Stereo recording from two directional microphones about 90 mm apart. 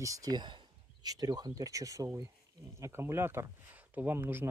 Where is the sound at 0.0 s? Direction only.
40° right (ahead or behind); by 1.1 s 60° right (ahead or behind).